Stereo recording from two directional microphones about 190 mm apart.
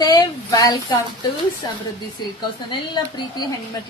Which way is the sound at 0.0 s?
20° left (ahead or behind).